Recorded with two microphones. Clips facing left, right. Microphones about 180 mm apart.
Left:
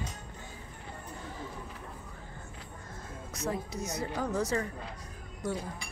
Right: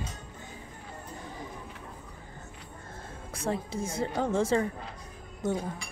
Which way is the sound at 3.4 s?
30° right (ahead or behind).